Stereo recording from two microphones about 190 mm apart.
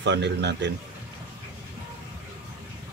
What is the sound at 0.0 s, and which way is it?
Speech, 65° right (ahead or behind).